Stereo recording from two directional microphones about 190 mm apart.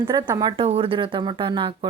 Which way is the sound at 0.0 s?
15° right (ahead or behind).